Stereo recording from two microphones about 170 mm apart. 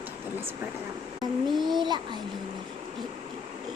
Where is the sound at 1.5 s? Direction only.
Centre (ahead or behind).